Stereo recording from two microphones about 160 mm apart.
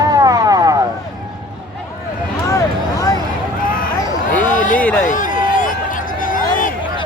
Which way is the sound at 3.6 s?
60° left (ahead or behind).